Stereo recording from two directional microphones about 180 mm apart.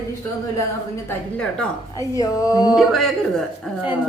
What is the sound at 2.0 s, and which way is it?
Speech, 20° left (ahead or behind).